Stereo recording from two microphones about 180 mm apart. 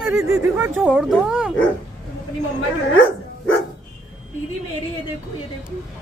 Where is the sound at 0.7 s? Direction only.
5° right (ahead or behind).